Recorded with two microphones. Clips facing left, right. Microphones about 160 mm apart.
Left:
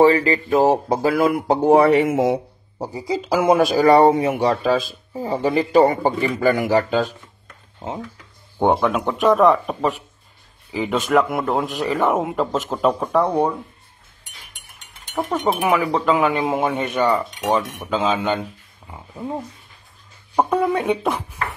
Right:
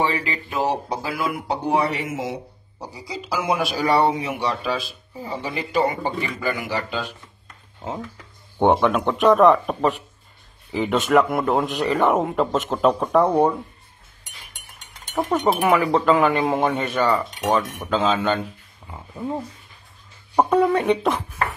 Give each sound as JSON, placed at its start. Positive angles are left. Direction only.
{"t": 0.0, "sound": "speech", "side_deg": 40}
{"t": 8.5, "sound": "speech", "side_deg": 0}
{"t": 15.6, "sound": "speech", "side_deg": 0}